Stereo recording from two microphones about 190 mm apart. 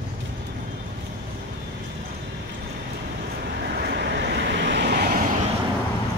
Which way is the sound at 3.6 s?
60° right (ahead or behind).